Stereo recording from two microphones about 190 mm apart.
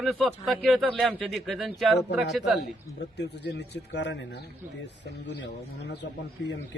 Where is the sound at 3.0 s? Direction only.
65° left (ahead or behind).